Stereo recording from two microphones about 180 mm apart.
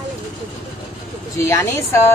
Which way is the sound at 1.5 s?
15° left (ahead or behind).